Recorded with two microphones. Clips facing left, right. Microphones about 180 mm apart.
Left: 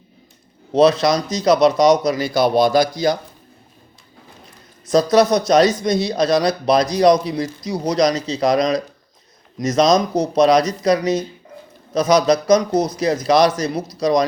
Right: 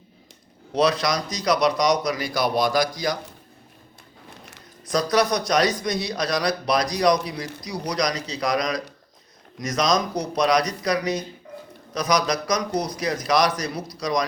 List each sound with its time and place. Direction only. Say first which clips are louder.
0.7 s speech: left 7 dB; 25° left (ahead or behind)
4.9 s speech: left 7 dB; 25° left (ahead or behind)